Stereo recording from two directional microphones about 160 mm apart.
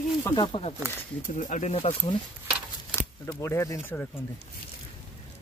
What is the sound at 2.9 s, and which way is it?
Speech, 15° left (ahead or behind).